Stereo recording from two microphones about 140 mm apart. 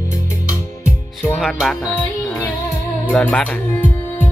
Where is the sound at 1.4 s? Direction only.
Centre (ahead or behind).